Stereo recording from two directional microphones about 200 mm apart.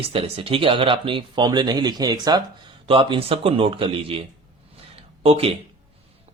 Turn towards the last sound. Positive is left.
turn(degrees=-30)  # may be behind; listen again after turning